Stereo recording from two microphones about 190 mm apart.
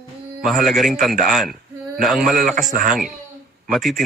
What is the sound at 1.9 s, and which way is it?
Speech, centre (ahead or behind).